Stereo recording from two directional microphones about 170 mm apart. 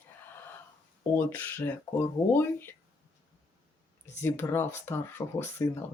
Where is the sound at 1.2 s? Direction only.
10° left (ahead or behind).